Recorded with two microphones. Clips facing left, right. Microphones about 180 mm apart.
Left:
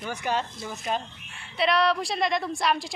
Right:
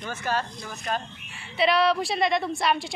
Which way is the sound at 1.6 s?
Centre (ahead or behind).